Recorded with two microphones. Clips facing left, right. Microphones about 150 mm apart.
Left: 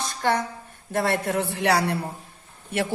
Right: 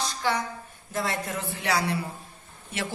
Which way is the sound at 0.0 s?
55° left (ahead or behind).